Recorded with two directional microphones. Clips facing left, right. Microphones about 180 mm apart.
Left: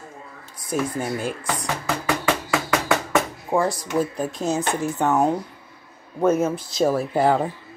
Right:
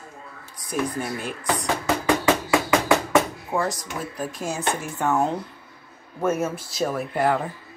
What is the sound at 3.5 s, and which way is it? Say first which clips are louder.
Speech: left 6 dB; 25° left (ahead or behind).